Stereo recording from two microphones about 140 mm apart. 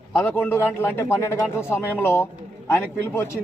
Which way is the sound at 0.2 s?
10° left (ahead or behind).